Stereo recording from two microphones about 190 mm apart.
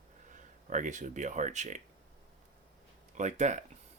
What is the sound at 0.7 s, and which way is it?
Speech, 40° right (ahead or behind).